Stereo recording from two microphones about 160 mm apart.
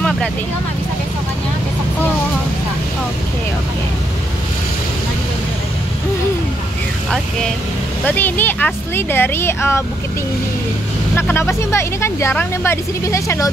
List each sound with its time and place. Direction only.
8.0 s speech: 10° left (ahead or behind)
11.1 s speech: 15° left (ahead or behind)